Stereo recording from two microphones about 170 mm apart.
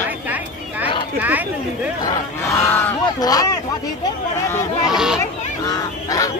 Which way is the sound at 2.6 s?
10° left (ahead or behind).